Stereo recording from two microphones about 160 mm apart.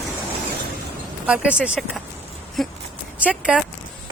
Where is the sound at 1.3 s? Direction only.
5° right (ahead or behind).